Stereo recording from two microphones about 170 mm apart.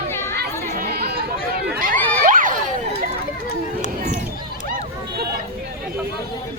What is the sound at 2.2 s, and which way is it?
Crowd, 50° right (ahead or behind).